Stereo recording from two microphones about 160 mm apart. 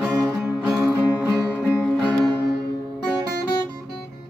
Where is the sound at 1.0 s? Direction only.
10° right (ahead or behind).